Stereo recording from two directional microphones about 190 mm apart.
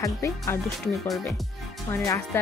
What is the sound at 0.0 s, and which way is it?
Speech, 15° left (ahead or behind).